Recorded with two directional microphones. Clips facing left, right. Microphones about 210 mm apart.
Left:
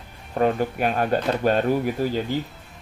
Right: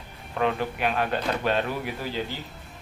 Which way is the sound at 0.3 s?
45° left (ahead or behind).